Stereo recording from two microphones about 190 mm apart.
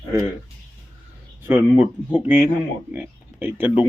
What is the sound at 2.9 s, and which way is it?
Speech, 10° right (ahead or behind).